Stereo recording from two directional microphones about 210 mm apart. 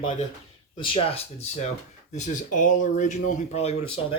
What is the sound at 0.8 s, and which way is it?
Speech, 25° left (ahead or behind).